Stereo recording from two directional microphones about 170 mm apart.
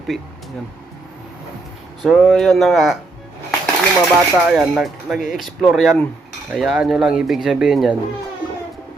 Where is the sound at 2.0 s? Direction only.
5° right (ahead or behind).